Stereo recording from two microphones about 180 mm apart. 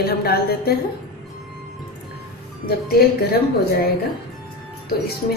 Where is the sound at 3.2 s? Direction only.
60° left (ahead or behind).